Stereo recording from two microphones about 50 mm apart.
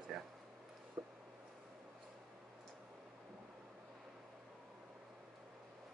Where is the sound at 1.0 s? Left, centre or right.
Right.